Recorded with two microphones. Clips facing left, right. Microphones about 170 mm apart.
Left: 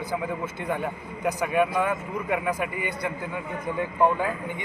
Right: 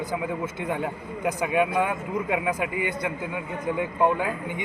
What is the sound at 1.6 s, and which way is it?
A man's voice, 15° right (ahead or behind).